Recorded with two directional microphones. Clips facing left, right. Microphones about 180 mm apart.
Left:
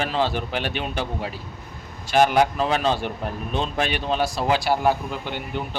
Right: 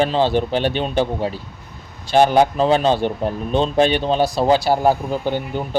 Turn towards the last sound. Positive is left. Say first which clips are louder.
# right 8 dB
turn(degrees=-40)  # may be behind; listen again after turning